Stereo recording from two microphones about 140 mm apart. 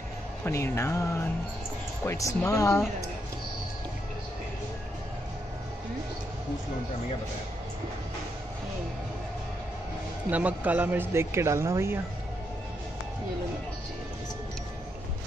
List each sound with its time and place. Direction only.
0.5 s speech: 20° left (ahead or behind)
10.3 s speech: 10° right (ahead or behind)